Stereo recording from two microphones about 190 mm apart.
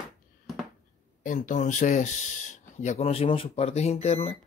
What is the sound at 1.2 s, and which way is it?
Speech, 45° left (ahead or behind).